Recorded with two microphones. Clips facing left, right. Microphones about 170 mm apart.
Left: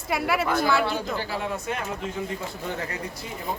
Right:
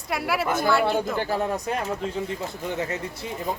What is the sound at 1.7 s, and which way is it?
Speech, 35° right (ahead or behind).